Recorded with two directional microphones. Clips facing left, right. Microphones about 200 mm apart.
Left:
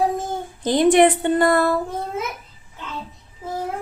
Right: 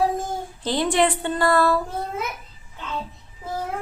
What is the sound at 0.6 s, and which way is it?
A woman's voice, 20° left (ahead or behind).